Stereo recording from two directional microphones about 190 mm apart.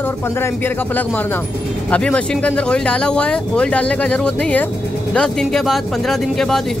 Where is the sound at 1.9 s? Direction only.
5° left (ahead or behind).